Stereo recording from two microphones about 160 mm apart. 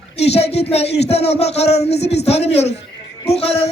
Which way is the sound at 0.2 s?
40° left (ahead or behind).